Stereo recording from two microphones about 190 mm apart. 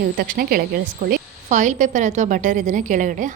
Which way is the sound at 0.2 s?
50° right (ahead or behind).